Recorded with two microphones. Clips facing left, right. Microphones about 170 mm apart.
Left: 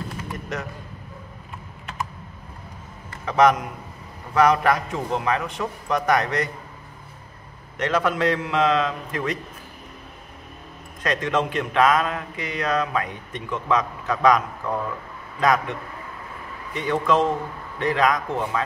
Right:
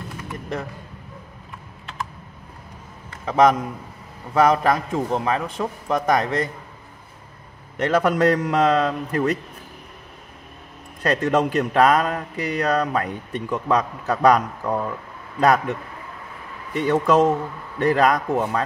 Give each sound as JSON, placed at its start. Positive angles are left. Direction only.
{"t": 3.3, "sound": "a man's voice", "side_deg": -25}
{"t": 7.8, "sound": "speech", "side_deg": -40}
{"t": 11.0, "sound": "speech", "side_deg": -35}
{"t": 16.7, "sound": "a man's voice", "side_deg": -40}